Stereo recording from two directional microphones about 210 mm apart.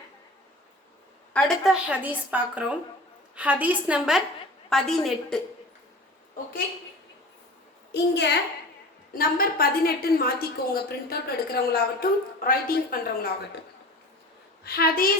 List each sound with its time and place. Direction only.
1.3 s a woman's voice: centre (ahead or behind)
8.1 s a woman's voice: 55° left (ahead or behind)
14.6 s a woman's voice: 45° left (ahead or behind)